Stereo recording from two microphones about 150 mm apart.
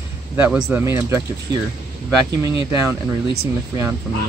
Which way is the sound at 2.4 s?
15° right (ahead or behind).